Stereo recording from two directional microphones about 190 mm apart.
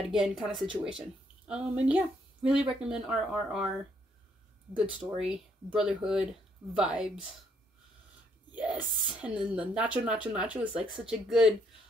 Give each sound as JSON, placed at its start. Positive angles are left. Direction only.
{"t": 0.1, "sound": "a woman's voice", "side_deg": 0}
{"t": 4.7, "sound": "a woman's voice", "side_deg": -5}
{"t": 8.5, "sound": "a woman's voice", "side_deg": -5}